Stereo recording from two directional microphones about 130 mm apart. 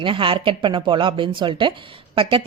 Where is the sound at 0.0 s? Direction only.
40° right (ahead or behind).